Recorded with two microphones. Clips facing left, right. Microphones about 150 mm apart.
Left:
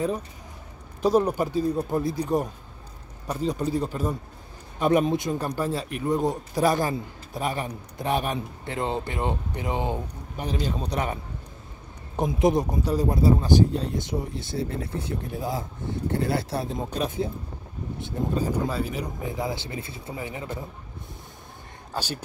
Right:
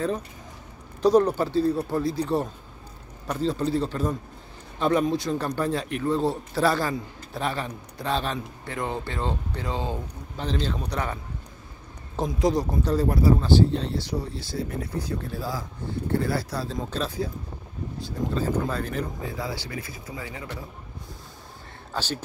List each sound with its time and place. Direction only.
1.0 s a man's voice: 10° left (ahead or behind)
12.2 s a man's voice: 20° left (ahead or behind); by 19.0 s 5° left (ahead or behind)
19.2 s speech: 20° left (ahead or behind)
21.9 s speech: 10° left (ahead or behind)